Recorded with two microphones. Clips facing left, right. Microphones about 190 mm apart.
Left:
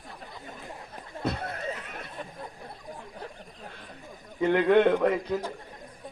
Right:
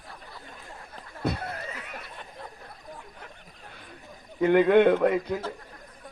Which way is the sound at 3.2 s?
35° left (ahead or behind).